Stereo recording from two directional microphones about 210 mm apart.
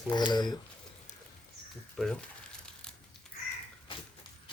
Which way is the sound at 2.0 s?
5° left (ahead or behind).